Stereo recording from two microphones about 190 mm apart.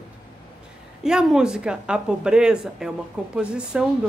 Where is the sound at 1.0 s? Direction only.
5° right (ahead or behind).